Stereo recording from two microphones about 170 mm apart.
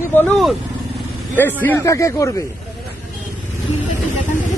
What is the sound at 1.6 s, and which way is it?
Speech, 15° left (ahead or behind).